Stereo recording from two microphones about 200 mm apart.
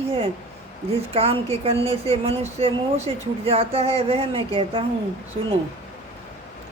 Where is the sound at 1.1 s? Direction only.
30° right (ahead or behind).